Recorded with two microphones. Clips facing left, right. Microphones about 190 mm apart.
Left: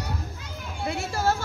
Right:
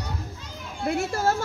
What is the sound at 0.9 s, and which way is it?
Speech, 50° right (ahead or behind).